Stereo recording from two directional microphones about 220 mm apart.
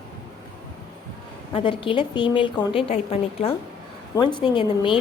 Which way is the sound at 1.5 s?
25° left (ahead or behind).